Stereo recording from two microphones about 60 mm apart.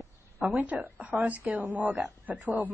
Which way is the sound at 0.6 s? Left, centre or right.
Right.